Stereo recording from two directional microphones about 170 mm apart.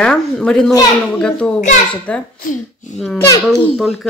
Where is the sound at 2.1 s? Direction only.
10° left (ahead or behind).